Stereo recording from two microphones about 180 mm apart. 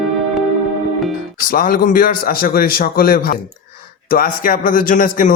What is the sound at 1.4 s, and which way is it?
A man's voice, 50° left (ahead or behind).